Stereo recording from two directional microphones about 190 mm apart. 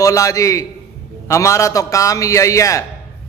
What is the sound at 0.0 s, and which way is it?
A man's voice, 15° left (ahead or behind).